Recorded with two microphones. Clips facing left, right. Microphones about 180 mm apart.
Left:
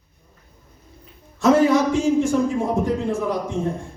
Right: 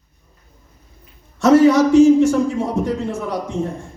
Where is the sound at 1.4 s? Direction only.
75° right (ahead or behind).